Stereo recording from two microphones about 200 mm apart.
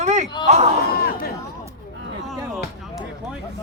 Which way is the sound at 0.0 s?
35° right (ahead or behind).